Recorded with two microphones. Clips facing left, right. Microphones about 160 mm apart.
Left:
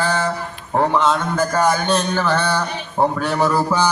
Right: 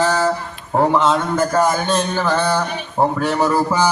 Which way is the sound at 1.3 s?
5° right (ahead or behind).